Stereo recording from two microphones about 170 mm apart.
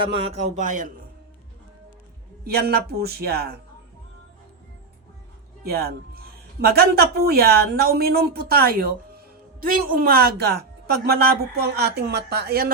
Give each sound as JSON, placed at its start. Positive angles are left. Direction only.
{"t": 0.2, "sound": "a man's voice", "side_deg": -40}
{"t": 2.4, "sound": "speech", "side_deg": -65}
{"t": 6.6, "sound": "speech", "side_deg": -65}